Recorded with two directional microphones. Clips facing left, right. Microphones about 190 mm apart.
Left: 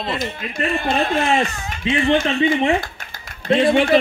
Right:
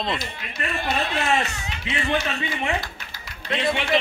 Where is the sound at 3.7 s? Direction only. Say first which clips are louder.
Left 8 dB; 45° left (ahead or behind).